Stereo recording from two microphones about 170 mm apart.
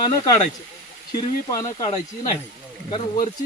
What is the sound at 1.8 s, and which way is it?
Speech, 25° left (ahead or behind).